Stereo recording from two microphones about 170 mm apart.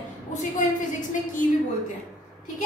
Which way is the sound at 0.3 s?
50° left (ahead or behind).